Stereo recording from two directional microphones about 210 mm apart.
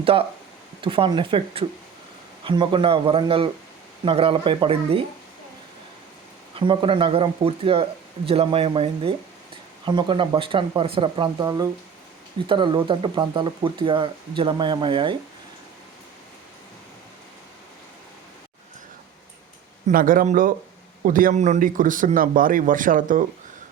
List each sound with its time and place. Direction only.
0.0 s speech: 25° right (ahead or behind)
6.6 s speech: 25° right (ahead or behind)
19.9 s a man's voice: 40° right (ahead or behind)